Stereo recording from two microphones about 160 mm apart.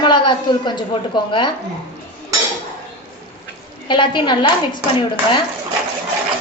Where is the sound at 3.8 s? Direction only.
30° left (ahead or behind).